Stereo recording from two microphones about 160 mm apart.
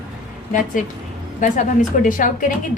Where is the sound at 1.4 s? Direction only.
50° left (ahead or behind).